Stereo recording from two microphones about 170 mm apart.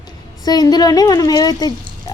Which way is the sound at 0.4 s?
25° left (ahead or behind).